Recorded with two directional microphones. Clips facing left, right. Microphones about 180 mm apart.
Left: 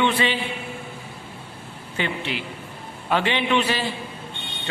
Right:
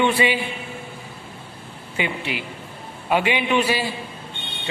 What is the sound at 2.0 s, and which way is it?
A man's voice, 10° right (ahead or behind).